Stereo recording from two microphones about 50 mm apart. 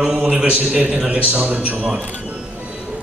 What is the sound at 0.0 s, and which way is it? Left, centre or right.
A man's voice, right.